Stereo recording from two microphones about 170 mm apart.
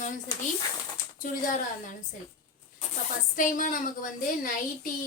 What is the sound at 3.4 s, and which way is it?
A woman's voice, 50° left (ahead or behind).